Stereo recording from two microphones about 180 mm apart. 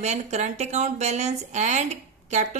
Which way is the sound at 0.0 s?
40° right (ahead or behind).